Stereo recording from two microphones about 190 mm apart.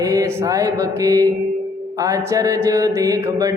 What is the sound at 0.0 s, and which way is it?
Speech, 15° right (ahead or behind).